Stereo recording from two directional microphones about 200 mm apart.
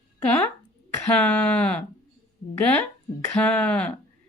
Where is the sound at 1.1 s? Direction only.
5° left (ahead or behind).